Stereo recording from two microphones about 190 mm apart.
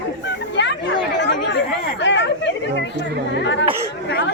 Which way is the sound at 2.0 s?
65° left (ahead or behind).